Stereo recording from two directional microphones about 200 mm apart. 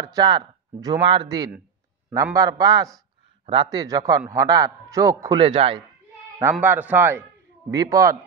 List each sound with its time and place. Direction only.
0.0 s a man's voice: 20° right (ahead or behind)
6.5 s a man's voice: 10° right (ahead or behind)